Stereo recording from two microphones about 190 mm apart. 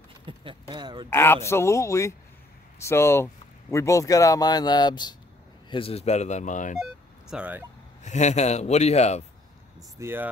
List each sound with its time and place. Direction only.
0.3 s a sound: 25° right (ahead or behind)
1.1 s speech: 10° left (ahead or behind); by 6.8 s 40° left (ahead or behind)
6.8 s speech: 5° right (ahead or behind)
8.0 s speech: 40° left (ahead or behind)
9.9 s speech: 10° right (ahead or behind)